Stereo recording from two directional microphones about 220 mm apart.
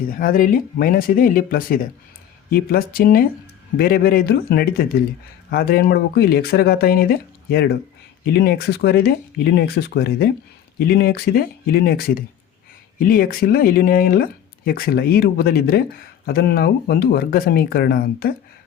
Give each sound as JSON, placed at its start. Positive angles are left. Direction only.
{"t": 0.1, "sound": "speech", "side_deg": 40}